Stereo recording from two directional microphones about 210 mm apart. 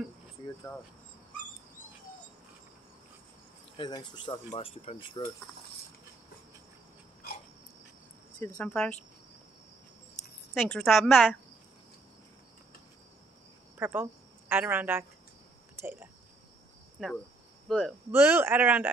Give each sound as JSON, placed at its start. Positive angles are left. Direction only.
{"t": 3.7, "sound": "speech", "side_deg": 20}
{"t": 8.5, "sound": "a woman's voice", "side_deg": 5}
{"t": 10.6, "sound": "a woman's voice", "side_deg": 5}
{"t": 13.7, "sound": "speech", "side_deg": -10}
{"t": 15.7, "sound": "cricket", "side_deg": -10}
{"t": 17.0, "sound": "a woman's voice", "side_deg": 0}
{"t": 18.1, "sound": "speech", "side_deg": -10}